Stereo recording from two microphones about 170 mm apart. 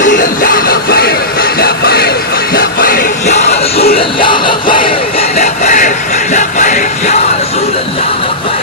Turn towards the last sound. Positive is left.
turn(degrees=45)  # may be behind; listen again after turning